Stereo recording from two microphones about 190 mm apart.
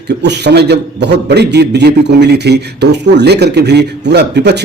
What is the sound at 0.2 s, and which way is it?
A man's voice, 60° right (ahead or behind).